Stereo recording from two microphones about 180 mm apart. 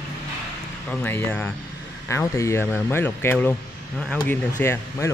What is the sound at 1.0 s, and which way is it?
Speech, 10° left (ahead or behind).